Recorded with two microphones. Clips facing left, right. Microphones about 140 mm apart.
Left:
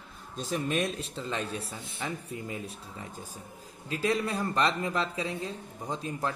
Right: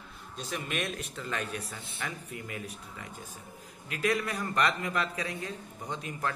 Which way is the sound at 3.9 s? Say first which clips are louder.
Left 1 dB; 25° left (ahead or behind).